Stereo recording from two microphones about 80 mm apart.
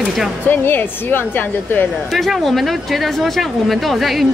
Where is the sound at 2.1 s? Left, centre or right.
Centre.